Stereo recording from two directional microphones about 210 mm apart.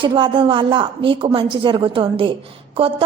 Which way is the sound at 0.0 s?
25° right (ahead or behind).